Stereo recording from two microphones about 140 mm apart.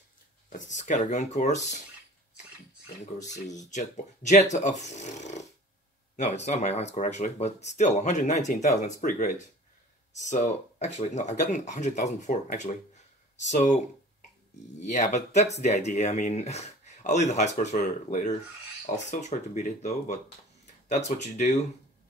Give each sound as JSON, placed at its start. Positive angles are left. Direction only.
{"t": 0.5, "sound": "speech", "side_deg": 60}
{"t": 3.2, "sound": "speech", "side_deg": 60}
{"t": 10.1, "sound": "speech", "side_deg": 60}
{"t": 14.8, "sound": "speech", "side_deg": 60}